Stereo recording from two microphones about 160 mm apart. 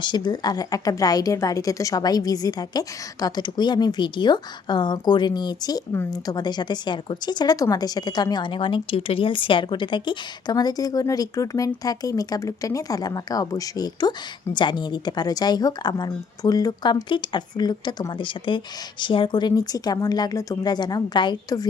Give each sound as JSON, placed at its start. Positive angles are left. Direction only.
{"t": 0.0, "sound": "a woman's voice", "side_deg": 30}